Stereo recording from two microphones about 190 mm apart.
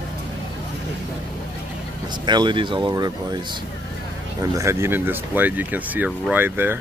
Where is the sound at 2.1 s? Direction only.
25° right (ahead or behind).